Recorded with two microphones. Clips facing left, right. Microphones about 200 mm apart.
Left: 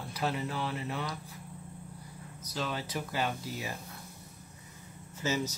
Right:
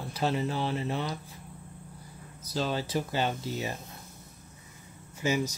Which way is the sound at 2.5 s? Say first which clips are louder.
Right 6 dB; 30° right (ahead or behind).